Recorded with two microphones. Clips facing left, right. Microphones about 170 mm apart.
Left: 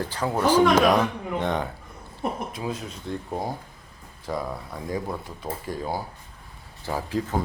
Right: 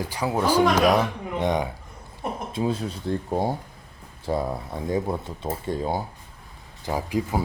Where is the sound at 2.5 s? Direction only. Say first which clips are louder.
Right 6 dB; 30° right (ahead or behind).